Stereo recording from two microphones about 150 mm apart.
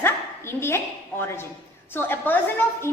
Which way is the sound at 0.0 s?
15° left (ahead or behind).